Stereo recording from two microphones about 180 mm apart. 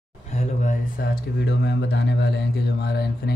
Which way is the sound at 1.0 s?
60° left (ahead or behind).